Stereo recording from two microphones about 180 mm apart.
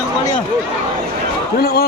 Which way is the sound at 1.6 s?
60° left (ahead or behind).